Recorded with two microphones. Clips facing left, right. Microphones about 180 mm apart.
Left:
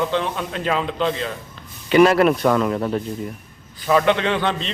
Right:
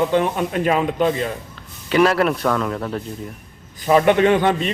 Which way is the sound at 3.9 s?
25° right (ahead or behind).